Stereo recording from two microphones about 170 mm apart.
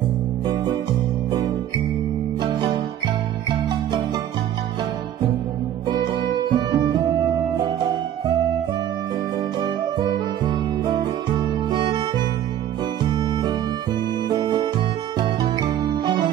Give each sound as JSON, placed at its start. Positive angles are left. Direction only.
{"t": 5.9, "sound": "music", "side_deg": -25}
{"t": 9.6, "sound": "music", "side_deg": -25}
{"t": 13.1, "sound": "music", "side_deg": -25}